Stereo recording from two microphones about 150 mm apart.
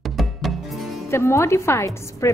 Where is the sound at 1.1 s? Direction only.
15° left (ahead or behind).